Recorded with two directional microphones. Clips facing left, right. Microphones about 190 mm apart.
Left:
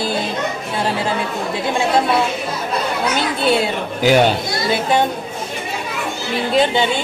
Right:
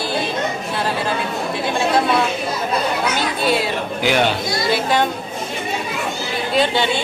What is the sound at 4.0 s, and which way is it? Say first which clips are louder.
Speech: left 5 dB; 40° left (ahead or behind).